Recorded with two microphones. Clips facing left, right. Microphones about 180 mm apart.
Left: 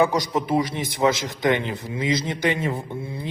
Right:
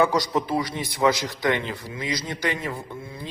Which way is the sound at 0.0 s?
20° left (ahead or behind).